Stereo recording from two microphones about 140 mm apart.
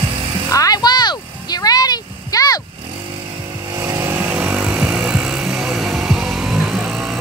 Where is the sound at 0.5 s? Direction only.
25° left (ahead or behind).